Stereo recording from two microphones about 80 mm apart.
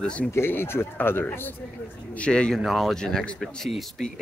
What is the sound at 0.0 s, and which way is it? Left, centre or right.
Speech, centre.